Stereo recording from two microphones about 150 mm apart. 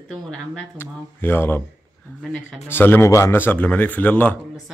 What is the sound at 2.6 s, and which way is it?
A man's voice, 15° left (ahead or behind).